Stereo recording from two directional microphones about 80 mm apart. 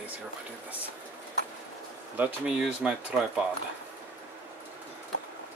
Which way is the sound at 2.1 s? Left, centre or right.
Right.